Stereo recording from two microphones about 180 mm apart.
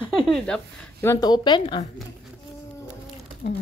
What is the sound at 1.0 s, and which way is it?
Speech, 25° left (ahead or behind).